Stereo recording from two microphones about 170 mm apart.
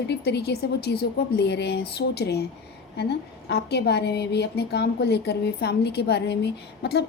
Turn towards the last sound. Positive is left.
turn(degrees=75)  # may be behind; listen again after turning